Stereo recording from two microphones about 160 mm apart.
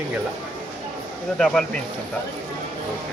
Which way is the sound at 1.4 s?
5° left (ahead or behind).